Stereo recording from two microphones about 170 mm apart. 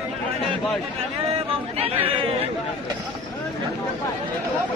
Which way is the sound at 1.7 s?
35° right (ahead or behind).